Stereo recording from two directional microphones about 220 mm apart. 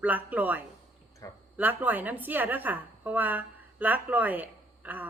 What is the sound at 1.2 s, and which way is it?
Speech, 15° left (ahead or behind).